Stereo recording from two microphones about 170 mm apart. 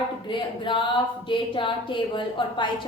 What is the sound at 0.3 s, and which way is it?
Speech, 30° left (ahead or behind).